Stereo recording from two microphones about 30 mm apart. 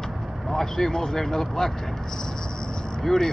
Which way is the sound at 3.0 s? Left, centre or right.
Centre.